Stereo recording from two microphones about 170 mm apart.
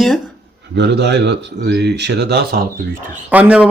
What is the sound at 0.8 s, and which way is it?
Speech, 80° right.